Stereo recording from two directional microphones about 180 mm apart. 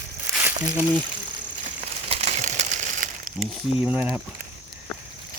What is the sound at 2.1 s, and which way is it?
Crumpling, 40° right (ahead or behind).